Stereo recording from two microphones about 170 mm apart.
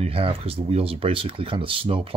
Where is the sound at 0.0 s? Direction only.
35° right (ahead or behind).